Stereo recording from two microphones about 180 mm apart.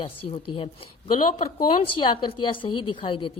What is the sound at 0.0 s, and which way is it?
Speech, 30° left (ahead or behind).